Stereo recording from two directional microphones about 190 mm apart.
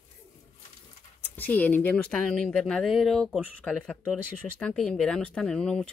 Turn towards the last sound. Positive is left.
turn(degrees=5)  # may be behind; listen again after turning